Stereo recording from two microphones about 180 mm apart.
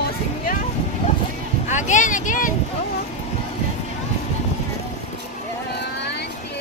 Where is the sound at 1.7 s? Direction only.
40° left (ahead or behind).